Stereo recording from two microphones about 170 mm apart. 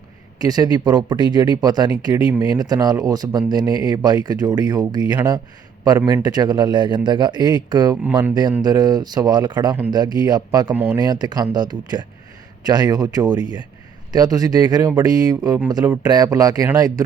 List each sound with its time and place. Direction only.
0.3 s speech: 20° right (ahead or behind)